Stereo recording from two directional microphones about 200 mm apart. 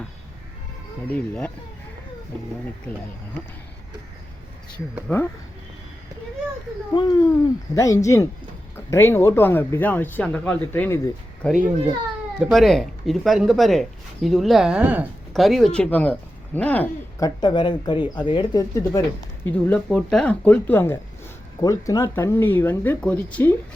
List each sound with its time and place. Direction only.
1.1 s speech: 5° left (ahead or behind)
5.0 s speech: 10° left (ahead or behind)
6.9 s speech: 20° left (ahead or behind)
11.4 s speech: centre (ahead or behind)